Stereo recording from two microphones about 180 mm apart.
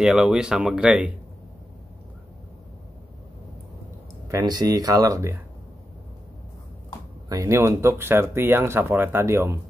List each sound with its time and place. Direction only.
0.0 s speech: 5° right (ahead or behind)
4.3 s speech: 20° right (ahead or behind)
7.2 s speech: 15° right (ahead or behind)